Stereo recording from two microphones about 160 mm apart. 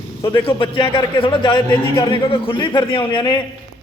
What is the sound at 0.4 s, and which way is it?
A man's voice, 35° left (ahead or behind).